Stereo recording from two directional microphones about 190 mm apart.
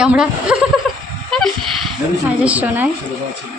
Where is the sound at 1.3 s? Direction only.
Centre (ahead or behind).